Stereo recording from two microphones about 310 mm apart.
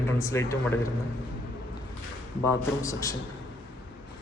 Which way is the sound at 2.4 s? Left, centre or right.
Centre.